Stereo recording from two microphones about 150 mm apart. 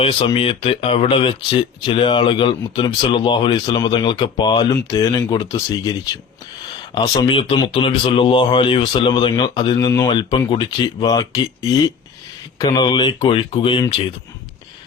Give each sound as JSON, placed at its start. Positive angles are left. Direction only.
{"t": 0.0, "sound": "speech", "side_deg": 35}
{"t": 7.2, "sound": "speech", "side_deg": 35}